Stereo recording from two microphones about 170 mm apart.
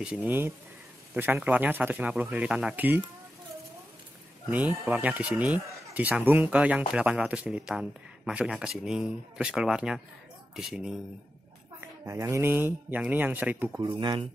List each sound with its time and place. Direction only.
0.0 s speech: 10° right (ahead or behind)
4.5 s speech: 10° right (ahead or behind)
11.8 s speech: 15° right (ahead or behind)
13.9 s speech: 25° right (ahead or behind)